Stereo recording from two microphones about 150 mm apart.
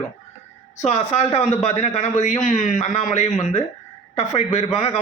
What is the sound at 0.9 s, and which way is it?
Speech, 45° left (ahead or behind).